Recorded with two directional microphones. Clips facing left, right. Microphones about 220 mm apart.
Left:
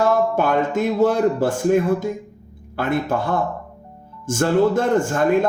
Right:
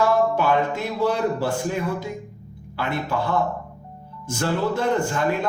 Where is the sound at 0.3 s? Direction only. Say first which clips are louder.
Left 3 dB; 50° left (ahead or behind).